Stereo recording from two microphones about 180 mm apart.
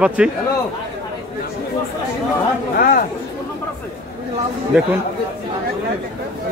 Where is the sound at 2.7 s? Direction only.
55° left (ahead or behind).